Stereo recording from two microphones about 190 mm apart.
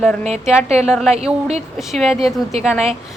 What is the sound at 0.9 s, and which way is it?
A woman's voice, centre (ahead or behind).